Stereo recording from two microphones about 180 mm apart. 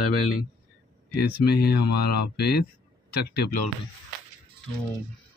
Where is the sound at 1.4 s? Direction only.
60° left (ahead or behind).